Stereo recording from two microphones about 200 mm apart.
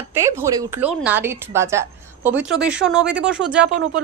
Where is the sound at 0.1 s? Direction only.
15° right (ahead or behind).